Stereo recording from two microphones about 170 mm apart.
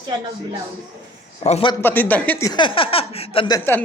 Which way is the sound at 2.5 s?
30° left (ahead or behind).